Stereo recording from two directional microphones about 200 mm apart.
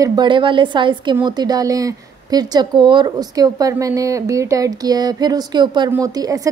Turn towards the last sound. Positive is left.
turn(degrees=-20)  # may be behind; listen again after turning